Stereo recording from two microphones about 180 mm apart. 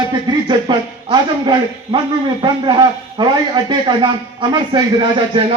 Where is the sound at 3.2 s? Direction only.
25° right (ahead or behind).